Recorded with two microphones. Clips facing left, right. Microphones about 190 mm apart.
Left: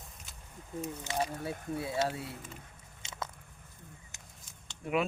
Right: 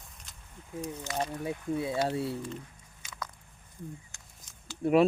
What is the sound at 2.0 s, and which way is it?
Speech, 30° right (ahead or behind).